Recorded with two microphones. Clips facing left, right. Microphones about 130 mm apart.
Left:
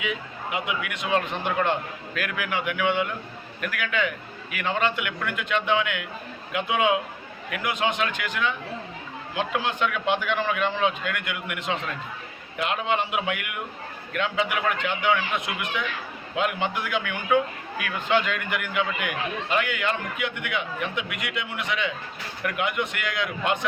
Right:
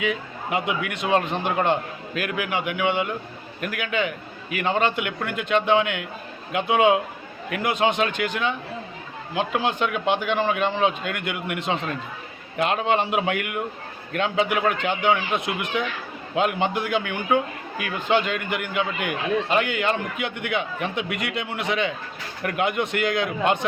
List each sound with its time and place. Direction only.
0.5 s a man's voice: 35° right (ahead or behind)